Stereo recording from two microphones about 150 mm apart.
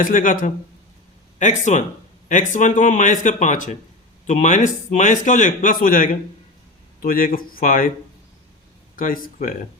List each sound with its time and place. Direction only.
0.0 s a man's voice: 60° left (ahead or behind)
9.0 s speech: 65° left (ahead or behind)